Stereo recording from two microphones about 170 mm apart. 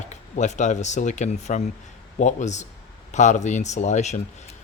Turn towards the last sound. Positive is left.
turn(degrees=45)  # may be behind; listen again after turning